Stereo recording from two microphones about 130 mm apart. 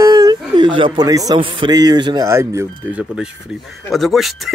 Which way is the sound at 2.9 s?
5° right (ahead or behind).